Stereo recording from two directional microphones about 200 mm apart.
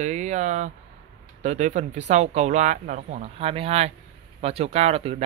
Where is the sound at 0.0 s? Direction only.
35° right (ahead or behind).